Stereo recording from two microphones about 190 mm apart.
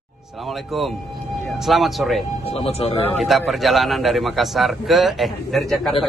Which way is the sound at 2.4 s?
30° left (ahead or behind).